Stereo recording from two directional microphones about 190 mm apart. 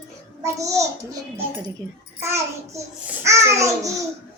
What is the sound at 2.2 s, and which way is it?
A child's voice, 15° right (ahead or behind).